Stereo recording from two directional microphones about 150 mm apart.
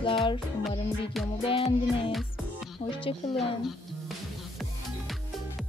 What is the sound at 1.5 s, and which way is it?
Speech, 40° left (ahead or behind).